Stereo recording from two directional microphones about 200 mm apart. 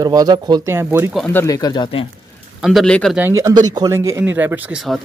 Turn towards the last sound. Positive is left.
turn(degrees=-5)  # may be behind; listen again after turning